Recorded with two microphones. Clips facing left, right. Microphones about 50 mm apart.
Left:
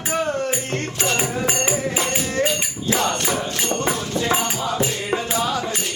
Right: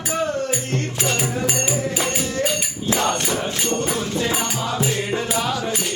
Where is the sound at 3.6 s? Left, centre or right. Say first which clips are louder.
Left 1 dB; left.